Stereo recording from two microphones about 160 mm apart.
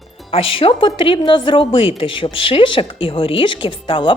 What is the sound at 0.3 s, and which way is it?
Speech, 35° left (ahead or behind).